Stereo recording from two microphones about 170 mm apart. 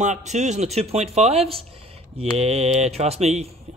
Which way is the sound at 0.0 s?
45° right (ahead or behind).